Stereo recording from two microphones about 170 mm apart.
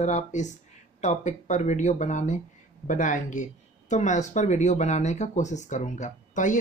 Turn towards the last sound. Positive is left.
turn(degrees=50)  # may be behind; listen again after turning